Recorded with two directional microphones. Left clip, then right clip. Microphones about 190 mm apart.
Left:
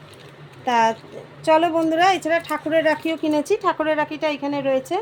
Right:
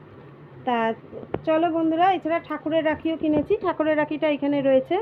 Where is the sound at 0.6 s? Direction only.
15° left (ahead or behind).